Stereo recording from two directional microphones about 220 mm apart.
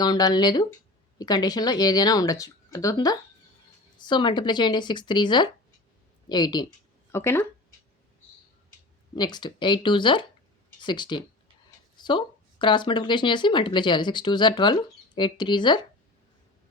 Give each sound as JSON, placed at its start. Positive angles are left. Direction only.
{"t": 0.0, "sound": "speech", "side_deg": 15}
{"t": 9.1, "sound": "speech", "side_deg": 20}